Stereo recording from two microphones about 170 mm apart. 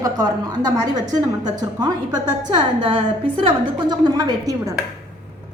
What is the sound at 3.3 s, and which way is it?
A woman's voice, 30° right (ahead or behind).